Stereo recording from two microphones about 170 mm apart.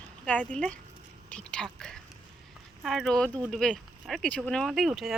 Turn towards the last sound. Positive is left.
turn(degrees=0)  # may be behind; listen again after turning